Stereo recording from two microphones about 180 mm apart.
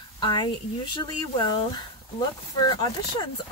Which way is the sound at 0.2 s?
25° left (ahead or behind).